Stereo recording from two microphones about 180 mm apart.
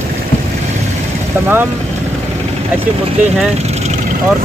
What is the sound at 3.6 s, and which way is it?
Vehicle, 40° right (ahead or behind).